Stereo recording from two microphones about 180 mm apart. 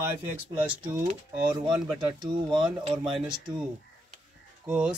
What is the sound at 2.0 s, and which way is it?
Speech, 20° right (ahead or behind).